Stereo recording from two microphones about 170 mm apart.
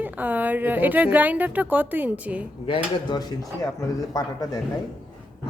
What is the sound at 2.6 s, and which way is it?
Speech, 25° left (ahead or behind).